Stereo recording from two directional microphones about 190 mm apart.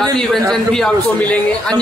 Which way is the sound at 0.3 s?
Centre (ahead or behind).